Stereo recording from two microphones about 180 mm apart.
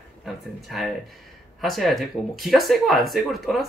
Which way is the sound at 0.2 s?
Centre (ahead or behind).